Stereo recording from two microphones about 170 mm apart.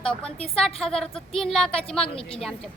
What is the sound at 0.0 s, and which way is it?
A woman's voice, 5° left (ahead or behind).